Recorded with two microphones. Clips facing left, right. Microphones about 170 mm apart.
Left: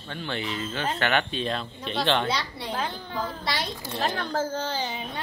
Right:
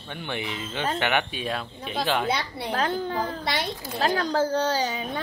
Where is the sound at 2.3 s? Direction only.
55° right (ahead or behind).